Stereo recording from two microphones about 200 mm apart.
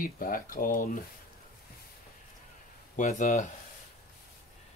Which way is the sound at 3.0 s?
35° left (ahead or behind).